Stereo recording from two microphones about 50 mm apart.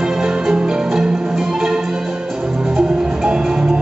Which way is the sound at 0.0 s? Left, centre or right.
Centre.